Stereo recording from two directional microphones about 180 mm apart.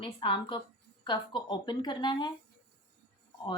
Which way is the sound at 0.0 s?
30° left (ahead or behind).